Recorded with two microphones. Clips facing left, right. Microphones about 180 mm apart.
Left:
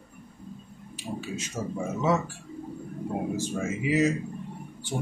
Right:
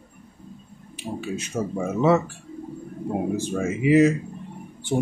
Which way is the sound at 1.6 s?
55° right (ahead or behind).